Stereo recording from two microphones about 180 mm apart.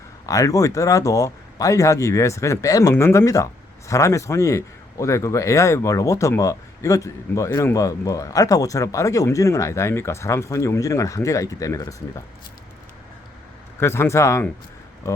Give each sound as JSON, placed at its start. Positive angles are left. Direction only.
{"t": 0.3, "sound": "speech", "side_deg": 20}
{"t": 13.7, "sound": "speech", "side_deg": 15}